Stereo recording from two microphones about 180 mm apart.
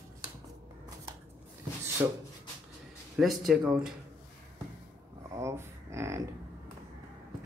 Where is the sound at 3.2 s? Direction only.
Centre (ahead or behind).